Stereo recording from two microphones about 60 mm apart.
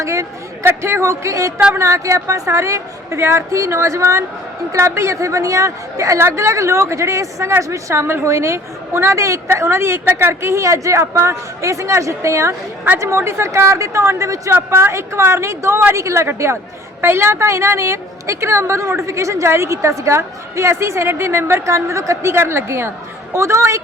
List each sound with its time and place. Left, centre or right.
0.0 s speech: right
0.6 s a woman's voice: right
6.1 s a woman's voice: right
14.0 s a woman's voice: right